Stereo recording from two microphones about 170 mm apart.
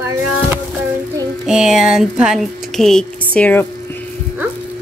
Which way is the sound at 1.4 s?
5° right (ahead or behind).